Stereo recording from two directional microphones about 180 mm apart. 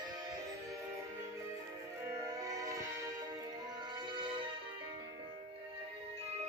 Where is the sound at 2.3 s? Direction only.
20° right (ahead or behind).